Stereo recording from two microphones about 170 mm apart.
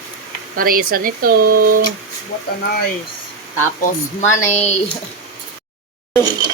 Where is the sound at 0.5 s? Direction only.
60° right (ahead or behind).